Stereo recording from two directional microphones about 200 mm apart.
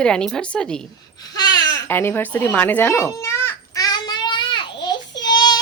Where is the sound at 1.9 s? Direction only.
10° left (ahead or behind).